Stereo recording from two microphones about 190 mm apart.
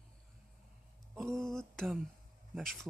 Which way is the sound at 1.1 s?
Centre (ahead or behind).